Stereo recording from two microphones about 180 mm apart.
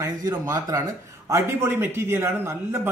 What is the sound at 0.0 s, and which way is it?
A man's voice, 15° right (ahead or behind).